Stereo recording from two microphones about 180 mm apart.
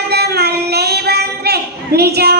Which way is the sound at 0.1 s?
65° right (ahead or behind).